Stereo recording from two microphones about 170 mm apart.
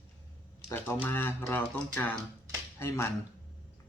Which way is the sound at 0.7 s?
15° left (ahead or behind).